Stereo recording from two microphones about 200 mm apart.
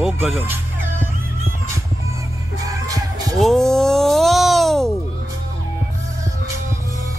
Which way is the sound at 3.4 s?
Centre (ahead or behind).